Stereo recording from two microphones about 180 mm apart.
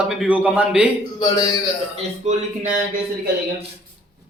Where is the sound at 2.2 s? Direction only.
40° right (ahead or behind).